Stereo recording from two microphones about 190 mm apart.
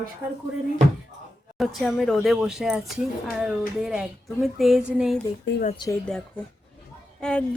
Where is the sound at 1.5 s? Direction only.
Centre (ahead or behind).